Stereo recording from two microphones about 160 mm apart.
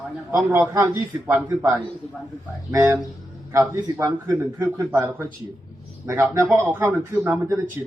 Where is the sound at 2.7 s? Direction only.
15° right (ahead or behind).